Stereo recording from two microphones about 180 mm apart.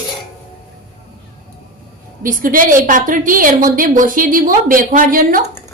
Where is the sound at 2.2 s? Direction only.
50° right (ahead or behind).